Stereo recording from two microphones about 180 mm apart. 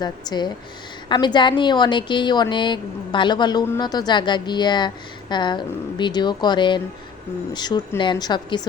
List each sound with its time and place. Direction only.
0.0 s a woman's voice: 25° left (ahead or behind)